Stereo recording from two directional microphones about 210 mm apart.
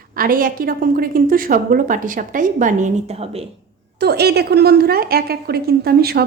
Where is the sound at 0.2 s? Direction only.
40° right (ahead or behind).